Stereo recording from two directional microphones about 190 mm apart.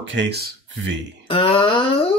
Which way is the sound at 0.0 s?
70° right (ahead or behind).